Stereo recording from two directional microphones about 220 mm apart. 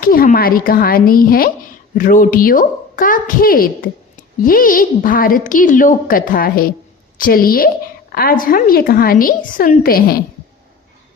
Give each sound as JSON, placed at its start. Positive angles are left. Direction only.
{"t": 0.0, "sound": "a woman's voice", "side_deg": 40}